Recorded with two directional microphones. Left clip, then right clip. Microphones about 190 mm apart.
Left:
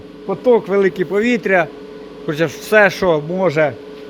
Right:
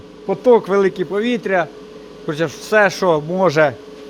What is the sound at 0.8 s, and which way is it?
A man's voice, centre (ahead or behind).